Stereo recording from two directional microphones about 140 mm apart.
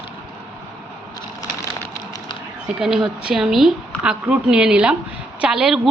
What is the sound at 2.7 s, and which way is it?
A woman's voice, 5° right (ahead or behind).